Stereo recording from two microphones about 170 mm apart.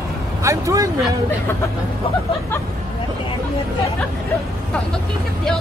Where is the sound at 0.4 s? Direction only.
15° right (ahead or behind).